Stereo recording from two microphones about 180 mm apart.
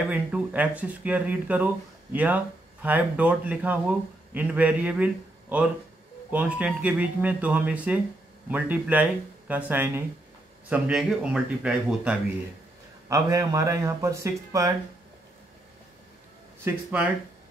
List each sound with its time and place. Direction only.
0.1 s speech: 10° right (ahead or behind)
13.1 s speech: 20° right (ahead or behind)
16.6 s speech: 10° right (ahead or behind)